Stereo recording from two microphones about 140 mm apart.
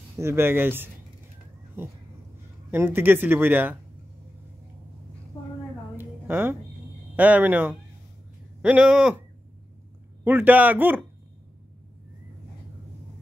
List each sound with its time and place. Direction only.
0.2 s speech: 20° right (ahead or behind)
2.7 s speech: 15° right (ahead or behind)
5.9 s a sound: 15° right (ahead or behind)
7.2 s speech: 10° right (ahead or behind)
10.2 s speech: 10° right (ahead or behind)